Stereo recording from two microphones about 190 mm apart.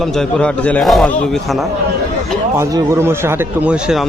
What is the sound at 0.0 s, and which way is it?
Speech, centre (ahead or behind).